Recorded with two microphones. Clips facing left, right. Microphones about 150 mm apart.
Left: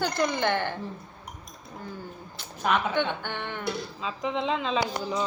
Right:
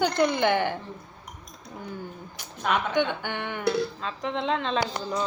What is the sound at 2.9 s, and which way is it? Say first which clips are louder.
Speech: right 2 dB; 10° right (ahead or behind).